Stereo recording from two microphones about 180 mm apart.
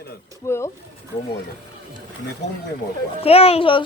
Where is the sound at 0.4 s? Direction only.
15° left (ahead or behind).